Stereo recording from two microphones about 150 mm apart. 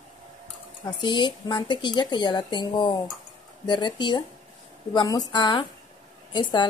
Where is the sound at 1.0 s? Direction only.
30° left (ahead or behind).